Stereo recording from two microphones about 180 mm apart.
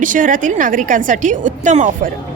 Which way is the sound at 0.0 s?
45° right (ahead or behind).